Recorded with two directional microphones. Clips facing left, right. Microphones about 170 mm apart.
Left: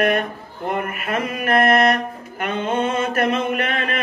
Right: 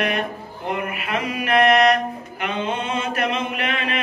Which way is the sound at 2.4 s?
45° left (ahead or behind).